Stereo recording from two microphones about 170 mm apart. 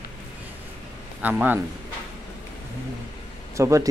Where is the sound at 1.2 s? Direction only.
10° right (ahead or behind).